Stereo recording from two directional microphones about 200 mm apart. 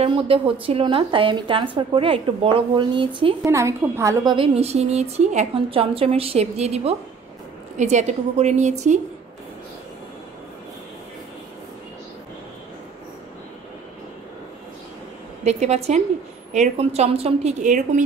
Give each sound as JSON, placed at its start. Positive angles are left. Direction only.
{"t": 0.0, "sound": "a woman's voice", "side_deg": -25}
{"t": 15.4, "sound": "a woman's voice", "side_deg": -35}